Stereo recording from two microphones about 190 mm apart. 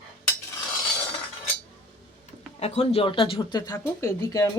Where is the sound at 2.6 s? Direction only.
35° left (ahead or behind).